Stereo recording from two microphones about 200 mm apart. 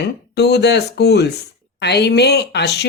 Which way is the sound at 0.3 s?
55° left (ahead or behind).